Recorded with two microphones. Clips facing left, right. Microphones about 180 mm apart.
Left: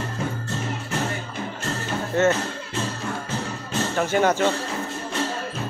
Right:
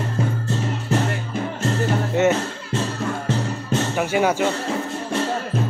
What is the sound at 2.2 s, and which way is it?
Music, 15° right (ahead or behind).